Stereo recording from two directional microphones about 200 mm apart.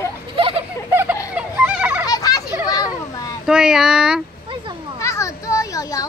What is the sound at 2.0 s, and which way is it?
Children playing, 20° left (ahead or behind).